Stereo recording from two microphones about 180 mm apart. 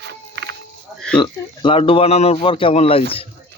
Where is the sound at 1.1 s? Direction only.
25° left (ahead or behind).